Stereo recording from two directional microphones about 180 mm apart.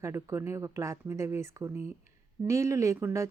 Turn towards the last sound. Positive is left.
turn(degrees=-15)  # may be behind; listen again after turning